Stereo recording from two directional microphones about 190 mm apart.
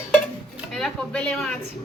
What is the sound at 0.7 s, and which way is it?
Speech, 5° left (ahead or behind).